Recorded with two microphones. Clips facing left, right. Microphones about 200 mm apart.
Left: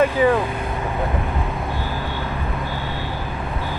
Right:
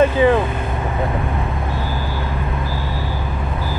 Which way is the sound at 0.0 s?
30° right (ahead or behind).